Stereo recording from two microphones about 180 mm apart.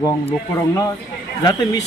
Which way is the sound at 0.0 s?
15° left (ahead or behind).